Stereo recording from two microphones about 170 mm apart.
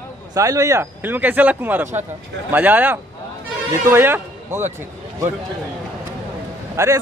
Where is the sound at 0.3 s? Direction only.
20° right (ahead or behind).